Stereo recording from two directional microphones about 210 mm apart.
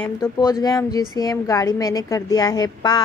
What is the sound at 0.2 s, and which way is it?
A woman's voice, 20° left (ahead or behind).